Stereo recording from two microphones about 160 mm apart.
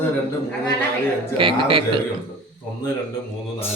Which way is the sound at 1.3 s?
35° right (ahead or behind).